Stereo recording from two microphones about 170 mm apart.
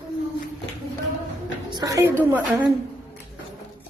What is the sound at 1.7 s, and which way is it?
A woman's voice, 25° right (ahead or behind).